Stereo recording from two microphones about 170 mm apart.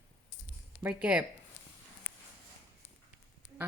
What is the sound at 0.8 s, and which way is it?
Speech, 10° right (ahead or behind).